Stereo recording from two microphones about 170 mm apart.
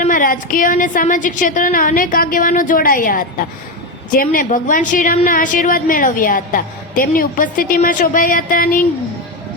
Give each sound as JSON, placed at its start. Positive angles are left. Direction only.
{"t": 0.0, "sound": "a woman's voice", "side_deg": 55}